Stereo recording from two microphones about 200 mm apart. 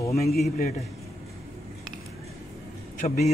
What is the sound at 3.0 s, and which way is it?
Speech, 35° left (ahead or behind).